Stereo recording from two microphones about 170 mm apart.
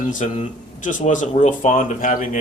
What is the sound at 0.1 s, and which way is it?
Speech, 45° left (ahead or behind).